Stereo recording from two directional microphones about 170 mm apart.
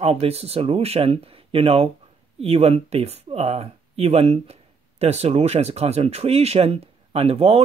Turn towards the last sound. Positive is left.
turn(degrees=-35)  # may be behind; listen again after turning